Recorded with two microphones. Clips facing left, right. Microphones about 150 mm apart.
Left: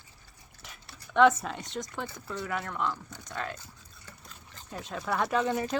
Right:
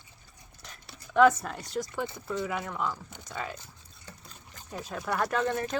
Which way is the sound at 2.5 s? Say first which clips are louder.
Even; 10° right (ahead or behind).